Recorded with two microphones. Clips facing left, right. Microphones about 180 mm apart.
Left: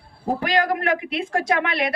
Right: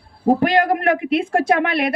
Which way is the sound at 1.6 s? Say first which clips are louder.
Right 4 dB; 55° right (ahead or behind).